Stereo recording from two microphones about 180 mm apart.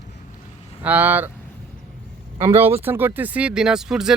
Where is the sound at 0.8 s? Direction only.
10° right (ahead or behind).